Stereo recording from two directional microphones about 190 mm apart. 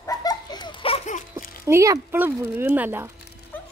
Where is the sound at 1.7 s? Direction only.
15° right (ahead or behind).